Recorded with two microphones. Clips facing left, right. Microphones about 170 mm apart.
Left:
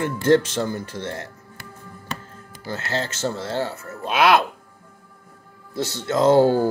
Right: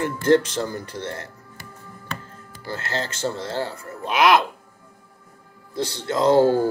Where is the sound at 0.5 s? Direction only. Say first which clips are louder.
Left 2 dB; 25° left (ahead or behind).